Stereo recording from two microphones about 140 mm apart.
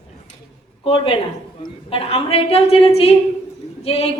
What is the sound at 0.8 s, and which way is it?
A man's voice, 40° left (ahead or behind).